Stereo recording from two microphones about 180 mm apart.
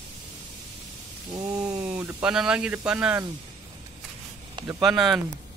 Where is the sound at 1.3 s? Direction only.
20° right (ahead or behind).